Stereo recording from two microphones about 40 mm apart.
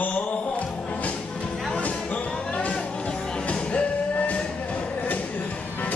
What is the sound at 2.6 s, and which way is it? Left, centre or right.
Music, left.